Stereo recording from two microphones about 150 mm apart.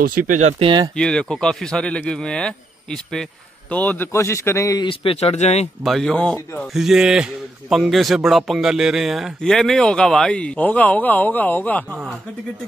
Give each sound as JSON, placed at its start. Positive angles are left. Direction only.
{"t": 0.0, "sound": "speech", "side_deg": -65}
{"t": 0.6, "sound": "speech", "side_deg": -30}
{"t": 0.9, "sound": "a man's voice", "side_deg": 5}
{"t": 4.8, "sound": "speech", "side_deg": 40}
{"t": 5.9, "sound": "a man's voice", "side_deg": 5}
{"t": 11.9, "sound": "a man's voice", "side_deg": -5}